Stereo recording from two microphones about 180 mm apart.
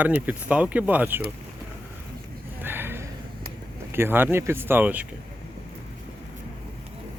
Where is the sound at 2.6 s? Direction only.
10° right (ahead or behind).